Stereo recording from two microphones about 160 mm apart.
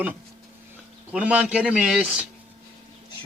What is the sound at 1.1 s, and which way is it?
Speech, 10° right (ahead or behind).